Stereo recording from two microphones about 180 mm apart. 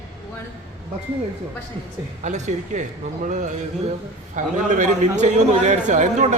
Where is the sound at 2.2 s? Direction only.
40° right (ahead or behind).